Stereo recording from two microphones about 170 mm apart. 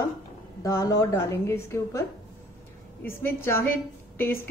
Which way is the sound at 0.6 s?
20° left (ahead or behind).